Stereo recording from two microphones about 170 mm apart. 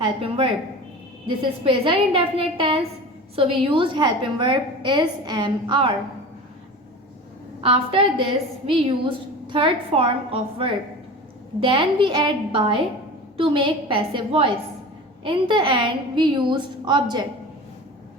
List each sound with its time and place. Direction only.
0.0 s a woman's voice: 30° right (ahead or behind)
7.6 s a woman's voice: 35° right (ahead or behind)